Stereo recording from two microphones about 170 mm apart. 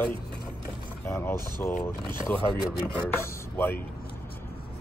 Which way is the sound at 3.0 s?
15° left (ahead or behind).